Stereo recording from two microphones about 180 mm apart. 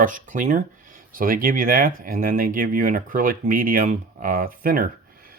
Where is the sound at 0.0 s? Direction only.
45° right (ahead or behind).